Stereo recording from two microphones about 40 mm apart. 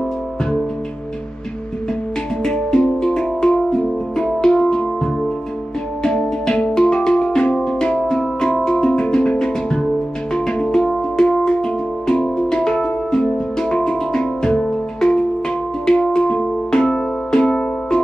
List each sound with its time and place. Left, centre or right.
2.4 s music: left
6.0 s music: centre